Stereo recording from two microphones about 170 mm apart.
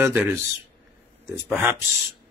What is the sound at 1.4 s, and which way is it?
Speech, 10° right (ahead or behind).